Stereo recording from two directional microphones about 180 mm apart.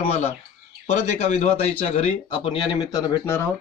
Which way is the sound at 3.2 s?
15° left (ahead or behind).